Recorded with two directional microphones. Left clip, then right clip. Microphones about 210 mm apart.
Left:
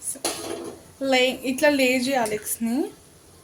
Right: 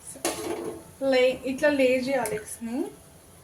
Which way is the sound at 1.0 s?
55° left (ahead or behind).